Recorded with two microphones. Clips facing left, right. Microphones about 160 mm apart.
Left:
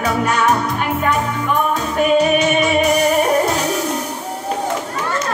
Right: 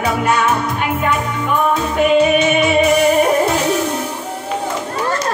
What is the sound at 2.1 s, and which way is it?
Music, 40° left (ahead or behind).